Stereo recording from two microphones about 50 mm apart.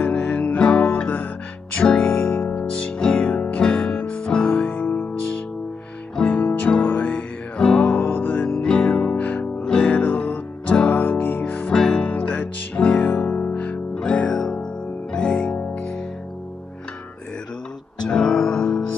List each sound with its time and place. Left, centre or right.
0.0 s music: left
4.8 s music: left
6.1 s music: left
6.8 s music: left
7.9 s music: left
8.5 s music: centre; by 11.6 s left
11.6 s music: centre; by 13.7 s left
14.3 s music: centre
18.0 s music: centre